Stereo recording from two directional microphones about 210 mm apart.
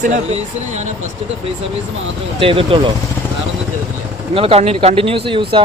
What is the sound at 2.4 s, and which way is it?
Speech, 25° right (ahead or behind).